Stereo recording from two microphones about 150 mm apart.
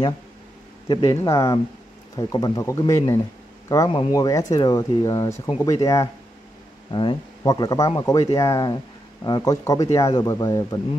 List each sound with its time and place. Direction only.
0.8 s speech: 25° left (ahead or behind)